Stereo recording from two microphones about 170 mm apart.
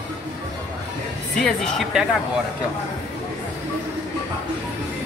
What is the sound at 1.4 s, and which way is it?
Speech, 5° left (ahead or behind).